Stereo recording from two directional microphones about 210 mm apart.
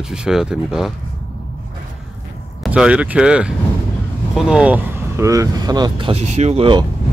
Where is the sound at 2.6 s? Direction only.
5° right (ahead or behind); by 6.9 s 25° right (ahead or behind).